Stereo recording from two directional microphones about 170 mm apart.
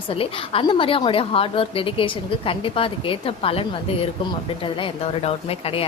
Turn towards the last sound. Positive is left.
turn(degrees=35)  # may be behind; listen again after turning